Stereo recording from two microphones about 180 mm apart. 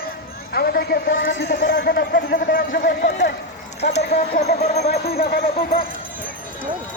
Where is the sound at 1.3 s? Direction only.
80° left.